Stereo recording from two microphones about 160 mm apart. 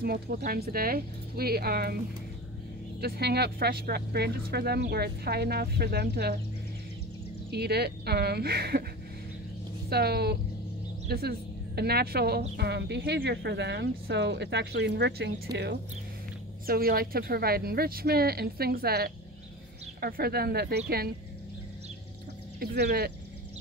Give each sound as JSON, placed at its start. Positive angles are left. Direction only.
{"t": 0.0, "sound": "speech", "side_deg": -75}
{"t": 3.0, "sound": "speech", "side_deg": -90}
{"t": 7.5, "sound": "speech", "side_deg": -90}
{"t": 9.8, "sound": "a woman's voice", "side_deg": -80}
{"t": 16.6, "sound": "speech", "side_deg": -70}
{"t": 22.6, "sound": "speech", "side_deg": -80}